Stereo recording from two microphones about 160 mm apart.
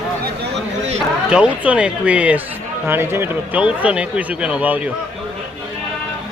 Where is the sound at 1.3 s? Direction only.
5° right (ahead or behind).